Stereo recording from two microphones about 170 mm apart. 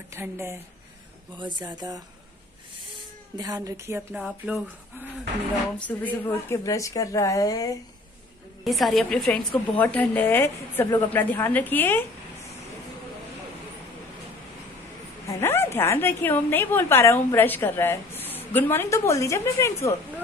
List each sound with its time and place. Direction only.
0.1 s speech: 15° right (ahead or behind)
1.4 s speech: 25° right (ahead or behind)
3.3 s speech: 20° right (ahead or behind)
5.9 s a woman's voice: 10° left (ahead or behind)
8.6 s a woman's voice: centre (ahead or behind)
15.2 s a woman's voice: 15° left (ahead or behind)